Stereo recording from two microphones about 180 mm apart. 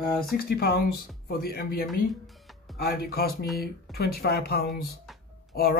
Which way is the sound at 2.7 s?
60° left (ahead or behind).